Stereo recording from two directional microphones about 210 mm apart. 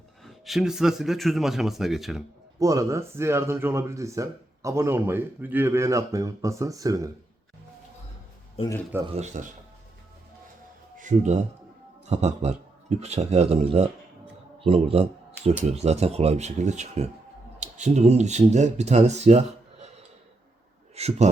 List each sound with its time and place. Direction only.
0.2 s speech: centre (ahead or behind)
2.6 s speech: 15° right (ahead or behind)
8.6 s speech: 30° left (ahead or behind)
9.1 s speech: 35° right (ahead or behind)
10.9 s speech: 35° right (ahead or behind)
20.9 s a man's voice: 30° right (ahead or behind)